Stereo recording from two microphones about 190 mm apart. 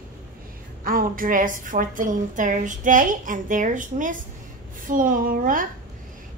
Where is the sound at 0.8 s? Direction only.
50° right (ahead or behind).